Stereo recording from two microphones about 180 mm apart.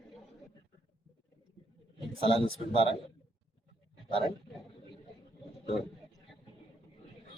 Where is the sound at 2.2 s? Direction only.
30° right (ahead or behind).